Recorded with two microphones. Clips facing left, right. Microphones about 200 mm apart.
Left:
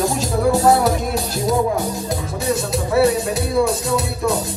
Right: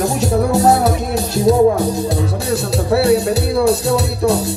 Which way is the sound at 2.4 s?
65° right (ahead or behind).